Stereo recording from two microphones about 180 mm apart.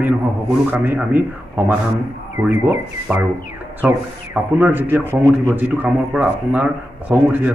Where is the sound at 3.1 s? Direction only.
Centre (ahead or behind).